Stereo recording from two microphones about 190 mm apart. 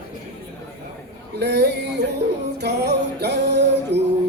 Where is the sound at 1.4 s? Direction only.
60° right (ahead or behind).